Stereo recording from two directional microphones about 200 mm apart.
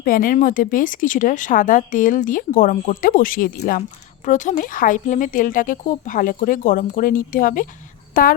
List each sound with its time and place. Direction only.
0.0 s a woman's voice: 45° left (ahead or behind)